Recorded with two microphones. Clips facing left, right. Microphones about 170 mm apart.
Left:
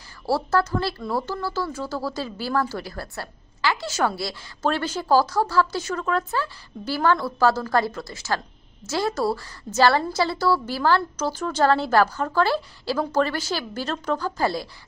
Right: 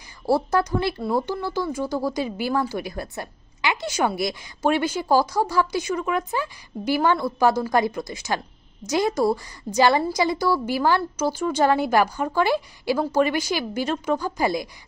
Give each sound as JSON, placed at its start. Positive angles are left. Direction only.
{"t": 0.3, "sound": "a woman's voice", "side_deg": -15}